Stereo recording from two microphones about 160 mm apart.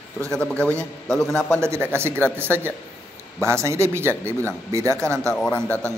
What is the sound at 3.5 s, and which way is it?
Speech, 15° right (ahead or behind).